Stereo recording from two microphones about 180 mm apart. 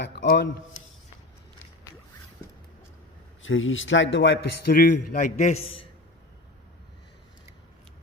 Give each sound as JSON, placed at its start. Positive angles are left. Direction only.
{"t": 0.0, "sound": "a man's voice", "side_deg": 70}
{"t": 3.4, "sound": "a man's voice", "side_deg": 90}
{"t": 4.7, "sound": "a man's voice", "side_deg": 50}